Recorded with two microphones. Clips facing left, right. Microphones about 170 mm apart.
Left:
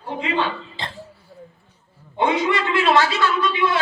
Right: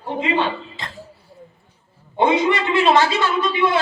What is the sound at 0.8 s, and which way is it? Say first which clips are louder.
Speech: left 2 dB; 30° left (ahead or behind).